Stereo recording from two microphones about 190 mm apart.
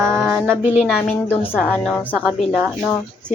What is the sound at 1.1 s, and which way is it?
A woman's voice, 10° left (ahead or behind).